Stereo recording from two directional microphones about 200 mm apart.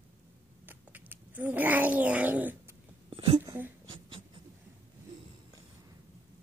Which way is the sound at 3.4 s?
15° right (ahead or behind).